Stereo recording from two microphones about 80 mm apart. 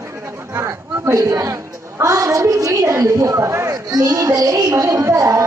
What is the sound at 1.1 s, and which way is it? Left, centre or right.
A woman's voice, right.